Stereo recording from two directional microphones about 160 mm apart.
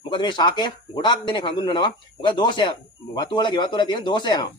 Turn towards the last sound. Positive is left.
turn(degrees=25)  # may be behind; listen again after turning